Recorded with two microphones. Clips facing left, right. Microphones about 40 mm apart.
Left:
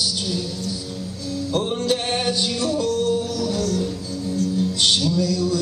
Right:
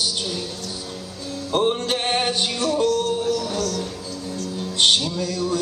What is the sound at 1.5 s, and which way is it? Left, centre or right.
Music, right.